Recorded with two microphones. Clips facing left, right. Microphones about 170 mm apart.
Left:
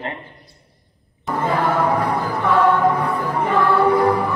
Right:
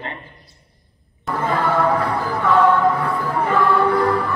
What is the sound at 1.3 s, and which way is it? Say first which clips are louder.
Music: left 1 dB; 15° left (ahead or behind).